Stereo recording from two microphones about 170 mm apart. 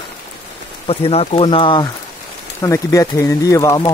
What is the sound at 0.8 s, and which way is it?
Speech, 35° left (ahead or behind).